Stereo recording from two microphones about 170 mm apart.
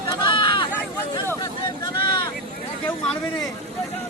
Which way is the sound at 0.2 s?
30° left (ahead or behind).